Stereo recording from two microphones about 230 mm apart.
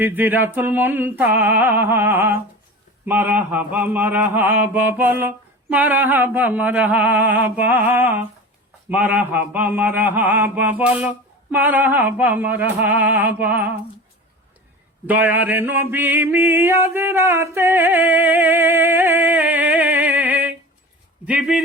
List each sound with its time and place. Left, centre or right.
0.0 s mantra: centre
15.0 s a sound: centre
21.2 s a man's voice: centre